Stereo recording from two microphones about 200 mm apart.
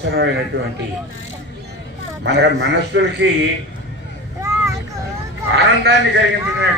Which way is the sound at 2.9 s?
65° right (ahead or behind).